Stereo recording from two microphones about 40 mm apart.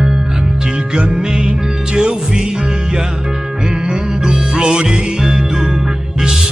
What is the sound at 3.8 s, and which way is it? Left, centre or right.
Music, centre.